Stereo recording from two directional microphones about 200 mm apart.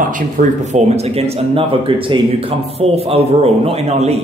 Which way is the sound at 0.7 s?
35° right (ahead or behind).